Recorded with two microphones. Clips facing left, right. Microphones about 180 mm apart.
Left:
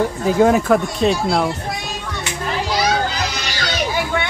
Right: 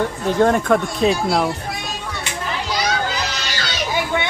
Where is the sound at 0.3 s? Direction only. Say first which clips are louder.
Left 2 dB; 5° left (ahead or behind).